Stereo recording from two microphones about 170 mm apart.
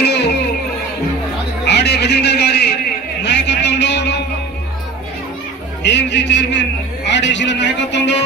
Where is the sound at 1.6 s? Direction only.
80° left.